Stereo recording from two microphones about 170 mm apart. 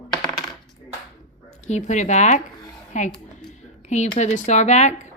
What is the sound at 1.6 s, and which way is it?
Speech, 45° left (ahead or behind).